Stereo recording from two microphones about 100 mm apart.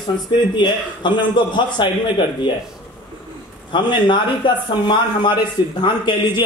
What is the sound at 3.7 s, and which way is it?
A man's voice, 50° left (ahead or behind).